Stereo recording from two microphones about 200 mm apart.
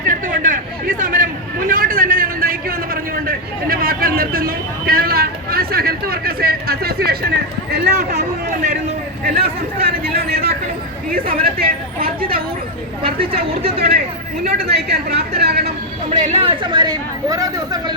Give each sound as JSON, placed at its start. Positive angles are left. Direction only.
{"t": 0.3, "sound": "a sound", "side_deg": -40}
{"t": 9.2, "sound": "a man's voice", "side_deg": -50}
{"t": 13.5, "sound": "speech", "side_deg": -30}
{"t": 14.6, "sound": "speech", "side_deg": -55}
{"t": 16.0, "sound": "speech", "side_deg": -30}